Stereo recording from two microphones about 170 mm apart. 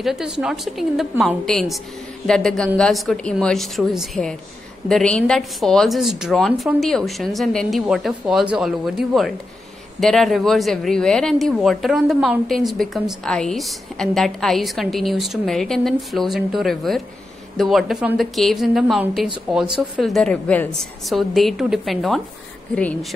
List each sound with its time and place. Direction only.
0.0 s a woman's voice: 5° right (ahead or behind)